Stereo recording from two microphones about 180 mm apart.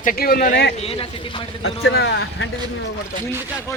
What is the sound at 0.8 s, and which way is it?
A man's voice, 30° left (ahead or behind).